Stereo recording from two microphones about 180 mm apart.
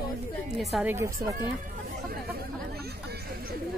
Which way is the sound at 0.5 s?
Centre (ahead or behind).